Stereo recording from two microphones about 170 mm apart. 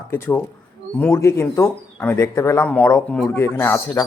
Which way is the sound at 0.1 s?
10° left (ahead or behind).